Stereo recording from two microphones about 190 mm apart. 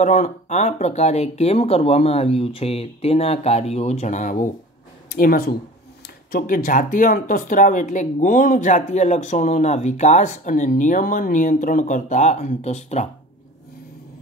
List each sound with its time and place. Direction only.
0.0 s speech: 40° left (ahead or behind)